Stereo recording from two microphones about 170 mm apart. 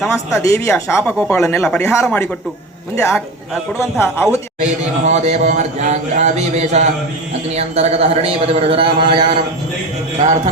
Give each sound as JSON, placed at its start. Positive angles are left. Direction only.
{"t": 0.3, "sound": "speech", "side_deg": 15}
{"t": 3.8, "sound": "speech", "side_deg": 15}
{"t": 4.6, "sound": "a man's voice", "side_deg": -45}